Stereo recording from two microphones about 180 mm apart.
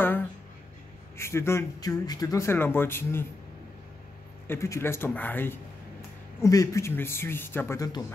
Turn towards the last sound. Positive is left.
turn(degrees=20)  # may be behind; listen again after turning